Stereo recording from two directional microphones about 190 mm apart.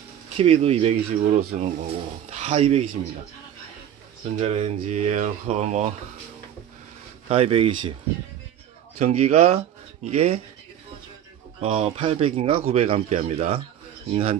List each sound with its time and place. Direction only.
0.4 s speech: 30° right (ahead or behind)
4.4 s speech: 35° right (ahead or behind)
7.2 s speech: 30° right (ahead or behind)
8.9 s speech: 35° right (ahead or behind)
11.6 s speech: 35° right (ahead or behind)